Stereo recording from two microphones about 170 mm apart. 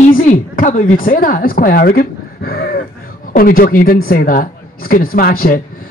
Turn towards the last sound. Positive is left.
turn(degrees=60)  # may be behind; listen again after turning